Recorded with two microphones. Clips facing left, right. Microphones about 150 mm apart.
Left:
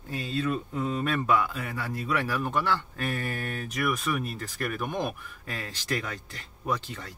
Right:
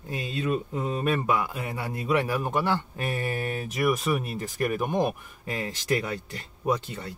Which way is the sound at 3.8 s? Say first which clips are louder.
Right 4 dB; 35° right (ahead or behind).